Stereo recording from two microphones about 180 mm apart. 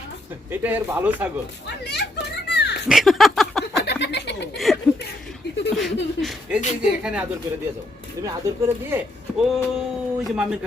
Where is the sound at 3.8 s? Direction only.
70° left (ahead or behind).